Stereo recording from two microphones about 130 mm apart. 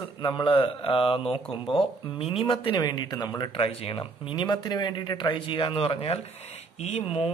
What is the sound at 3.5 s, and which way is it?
Speech, 45° left (ahead or behind).